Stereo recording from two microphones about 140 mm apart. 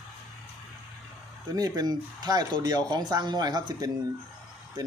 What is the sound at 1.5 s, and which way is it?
Speech, 25° right (ahead or behind).